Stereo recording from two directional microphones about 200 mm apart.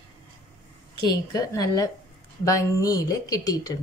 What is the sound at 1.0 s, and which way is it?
A woman's voice, 20° left (ahead or behind).